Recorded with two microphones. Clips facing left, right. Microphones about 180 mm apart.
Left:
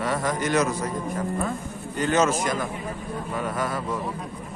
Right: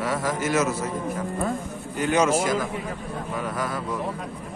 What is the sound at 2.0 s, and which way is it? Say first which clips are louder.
Speech: even; 10° right (ahead or behind).